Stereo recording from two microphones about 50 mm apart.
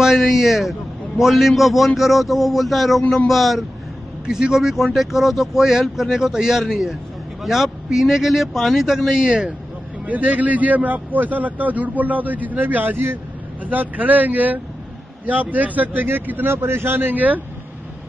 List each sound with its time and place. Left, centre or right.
0.0 s a man's voice: centre
4.3 s speech: centre
9.2 s speech: centre
10.0 s a man's voice: right